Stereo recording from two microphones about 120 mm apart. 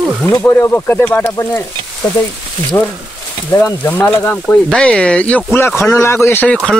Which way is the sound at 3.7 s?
20° left (ahead or behind).